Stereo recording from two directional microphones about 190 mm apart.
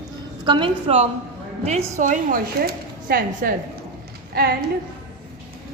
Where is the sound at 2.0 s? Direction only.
45° right (ahead or behind).